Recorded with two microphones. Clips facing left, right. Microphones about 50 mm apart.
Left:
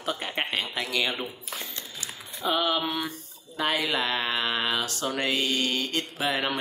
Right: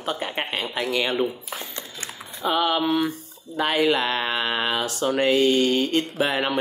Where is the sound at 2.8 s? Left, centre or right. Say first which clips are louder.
Right 7 dB; right.